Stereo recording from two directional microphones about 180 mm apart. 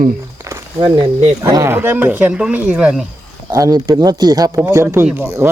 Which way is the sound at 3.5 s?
20° right (ahead or behind).